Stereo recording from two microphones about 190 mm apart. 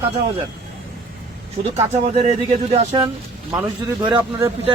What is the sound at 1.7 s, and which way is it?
Speech, 35° right (ahead or behind).